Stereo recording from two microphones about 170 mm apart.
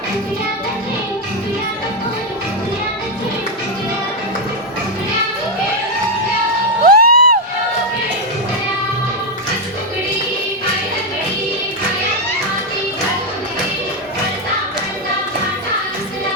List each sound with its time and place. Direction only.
6.8 s music: 60° right (ahead or behind)